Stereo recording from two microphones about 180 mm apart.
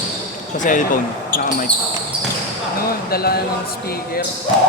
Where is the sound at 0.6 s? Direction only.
45° left (ahead or behind).